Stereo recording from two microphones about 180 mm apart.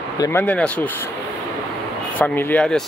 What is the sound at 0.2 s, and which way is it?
Speech, 10° left (ahead or behind).